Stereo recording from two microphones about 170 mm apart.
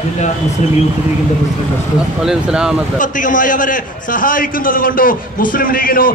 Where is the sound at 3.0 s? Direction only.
50° left (ahead or behind).